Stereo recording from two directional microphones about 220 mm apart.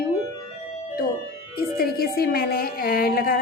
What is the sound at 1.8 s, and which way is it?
A woman's voice, 45° left (ahead or behind).